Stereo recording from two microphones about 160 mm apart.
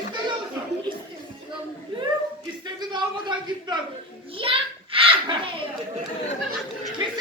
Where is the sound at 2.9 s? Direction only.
30° right (ahead or behind).